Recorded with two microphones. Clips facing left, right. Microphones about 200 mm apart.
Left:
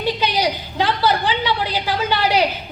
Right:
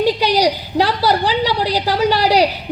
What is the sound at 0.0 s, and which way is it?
A woman's voice, 40° right (ahead or behind).